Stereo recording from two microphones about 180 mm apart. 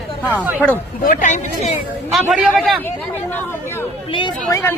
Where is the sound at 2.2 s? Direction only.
5° right (ahead or behind).